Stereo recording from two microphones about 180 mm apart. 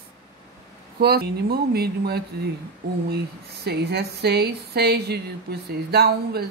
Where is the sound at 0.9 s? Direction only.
60° right (ahead or behind).